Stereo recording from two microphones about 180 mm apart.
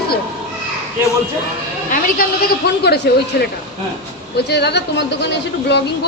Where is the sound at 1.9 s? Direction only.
55° left (ahead or behind).